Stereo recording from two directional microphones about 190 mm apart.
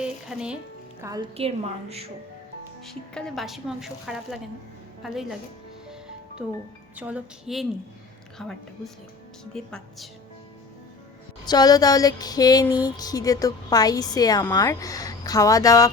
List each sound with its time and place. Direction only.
0.0 s speech: 5° right (ahead or behind)
1.0 s a woman's voice: 20° right (ahead or behind)
1.4 s a woman's voice: 30° right (ahead or behind)
2.8 s speech: centre (ahead or behind)
6.4 s speech: 5° right (ahead or behind)
11.4 s a woman's voice: 20° left (ahead or behind)